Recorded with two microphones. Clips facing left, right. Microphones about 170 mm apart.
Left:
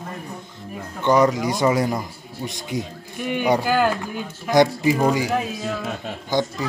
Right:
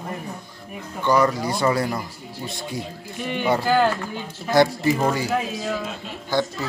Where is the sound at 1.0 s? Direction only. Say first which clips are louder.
Left 2 dB; 20° left (ahead or behind).